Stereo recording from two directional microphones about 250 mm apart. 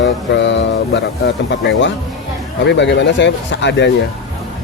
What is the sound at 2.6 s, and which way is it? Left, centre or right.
Speech, left.